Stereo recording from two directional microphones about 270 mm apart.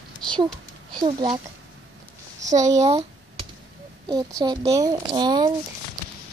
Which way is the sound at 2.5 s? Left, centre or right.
Centre.